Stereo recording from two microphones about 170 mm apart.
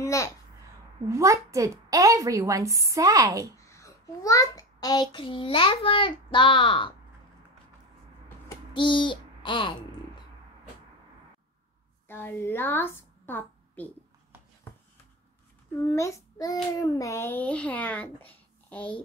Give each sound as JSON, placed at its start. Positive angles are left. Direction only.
{"t": 0.0, "sound": "babbling", "side_deg": 15}
{"t": 1.0, "sound": "a woman's voice", "side_deg": -15}
{"t": 3.5, "sound": "child singing", "side_deg": 20}
{"t": 8.5, "sound": "a sound", "side_deg": 30}
{"t": 12.1, "sound": "a woman's voice", "side_deg": 10}
{"t": 15.8, "sound": "a child's voice", "side_deg": 15}